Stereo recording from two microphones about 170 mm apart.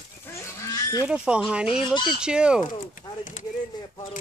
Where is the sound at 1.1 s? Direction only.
5° right (ahead or behind).